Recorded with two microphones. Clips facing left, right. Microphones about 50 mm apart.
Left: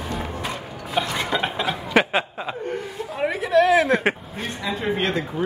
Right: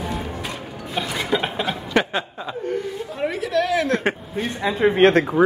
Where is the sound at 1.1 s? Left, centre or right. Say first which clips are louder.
Right 1 dB; centre.